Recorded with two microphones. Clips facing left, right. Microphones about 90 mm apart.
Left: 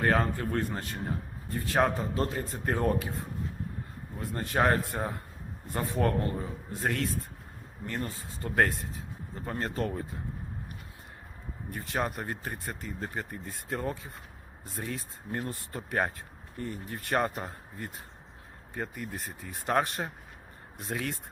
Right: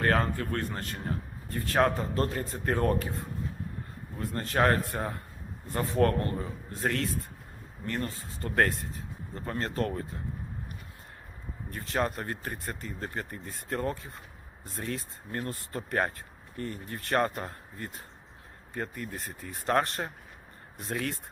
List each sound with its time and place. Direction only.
0.0 s a man's voice: 5° left (ahead or behind)
4.2 s a man's voice: 10° left (ahead or behind)
11.7 s a man's voice: 10° left (ahead or behind)